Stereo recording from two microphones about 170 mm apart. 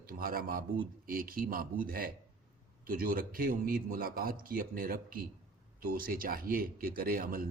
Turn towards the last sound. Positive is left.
turn(degrees=-55)  # may be behind; listen again after turning